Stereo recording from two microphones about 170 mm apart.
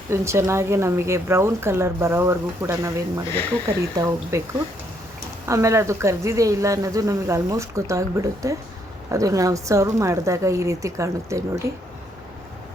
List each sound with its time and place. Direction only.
0.1 s a woman's voice: 15° right (ahead or behind)
5.5 s speech: 20° right (ahead or behind)